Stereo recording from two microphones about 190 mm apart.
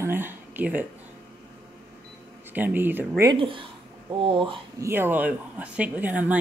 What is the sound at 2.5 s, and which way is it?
Speech, 10° right (ahead or behind).